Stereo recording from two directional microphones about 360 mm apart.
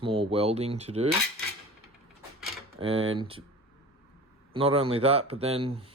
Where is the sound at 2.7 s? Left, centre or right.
Centre.